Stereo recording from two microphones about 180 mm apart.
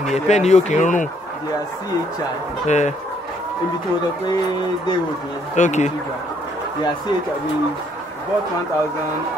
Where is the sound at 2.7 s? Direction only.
40° left (ahead or behind).